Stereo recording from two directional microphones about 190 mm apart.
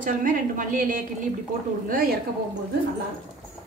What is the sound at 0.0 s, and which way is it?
Speech, 45° right (ahead or behind).